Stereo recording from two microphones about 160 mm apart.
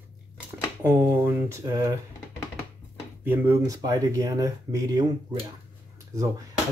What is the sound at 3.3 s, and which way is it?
Speech, 20° right (ahead or behind).